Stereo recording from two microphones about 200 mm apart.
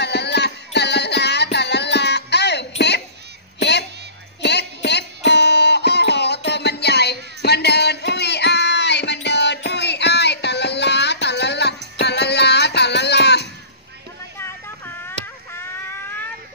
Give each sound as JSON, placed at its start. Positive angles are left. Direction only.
{"t": 0.0, "sound": "music", "side_deg": 60}
{"t": 4.4, "sound": "music", "side_deg": 60}